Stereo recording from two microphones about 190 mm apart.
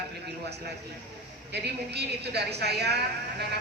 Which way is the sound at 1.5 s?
60° right (ahead or behind).